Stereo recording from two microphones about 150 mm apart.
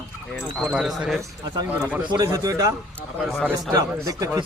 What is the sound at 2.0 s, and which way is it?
Speech, 30° right (ahead or behind).